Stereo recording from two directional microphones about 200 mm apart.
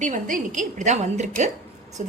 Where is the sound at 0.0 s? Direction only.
40° right (ahead or behind).